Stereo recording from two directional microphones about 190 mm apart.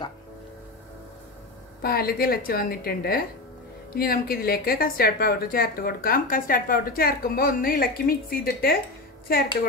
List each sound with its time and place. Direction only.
1.8 s a woman's voice: 55° left (ahead or behind)